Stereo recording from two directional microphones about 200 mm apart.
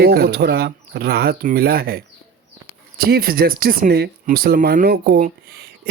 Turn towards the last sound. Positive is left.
turn(degrees=-50)  # may be behind; listen again after turning